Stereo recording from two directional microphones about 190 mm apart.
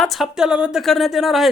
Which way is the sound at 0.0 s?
Centre (ahead or behind).